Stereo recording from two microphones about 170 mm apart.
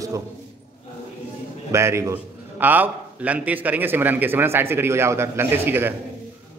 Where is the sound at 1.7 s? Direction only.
15° right (ahead or behind).